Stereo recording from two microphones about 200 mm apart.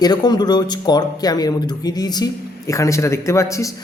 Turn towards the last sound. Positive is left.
turn(degrees=15)  # may be behind; listen again after turning